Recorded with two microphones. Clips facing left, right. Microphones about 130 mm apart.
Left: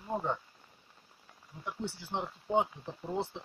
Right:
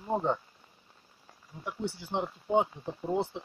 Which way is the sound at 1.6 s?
15° right (ahead or behind).